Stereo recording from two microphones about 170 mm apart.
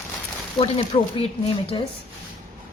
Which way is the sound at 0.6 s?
30° left (ahead or behind).